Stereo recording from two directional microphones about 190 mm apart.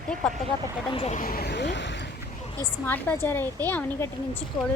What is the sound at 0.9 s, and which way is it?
Speech, 30° left (ahead or behind).